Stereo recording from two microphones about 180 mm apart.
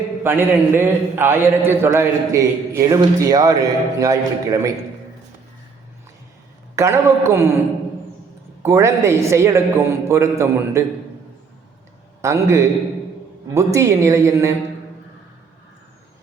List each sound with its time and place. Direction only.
0.2 s a man's voice: 10° right (ahead or behind)
6.7 s a man's voice: 15° right (ahead or behind)
8.6 s a man's voice: 15° right (ahead or behind)
12.2 s a man's voice: 15° right (ahead or behind)